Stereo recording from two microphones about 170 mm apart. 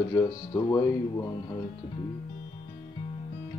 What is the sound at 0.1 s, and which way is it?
Music, 15° left (ahead or behind).